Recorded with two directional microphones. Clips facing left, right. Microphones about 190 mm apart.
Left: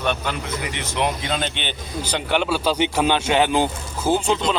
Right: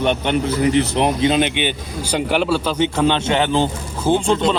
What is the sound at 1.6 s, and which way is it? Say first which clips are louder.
Speech: right 6 dB; 10° right (ahead or behind).